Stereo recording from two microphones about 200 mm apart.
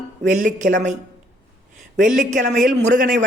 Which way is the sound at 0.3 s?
40° right (ahead or behind).